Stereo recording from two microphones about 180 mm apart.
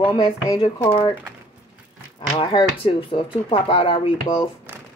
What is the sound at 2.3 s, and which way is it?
Speech, 30° left (ahead or behind).